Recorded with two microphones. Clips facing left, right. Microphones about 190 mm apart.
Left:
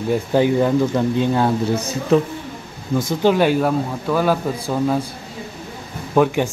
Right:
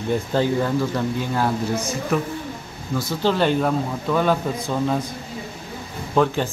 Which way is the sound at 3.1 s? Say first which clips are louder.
Left 4 dB; 15° left (ahead or behind).